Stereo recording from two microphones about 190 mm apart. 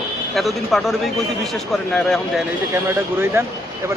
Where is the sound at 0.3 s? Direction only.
Centre (ahead or behind).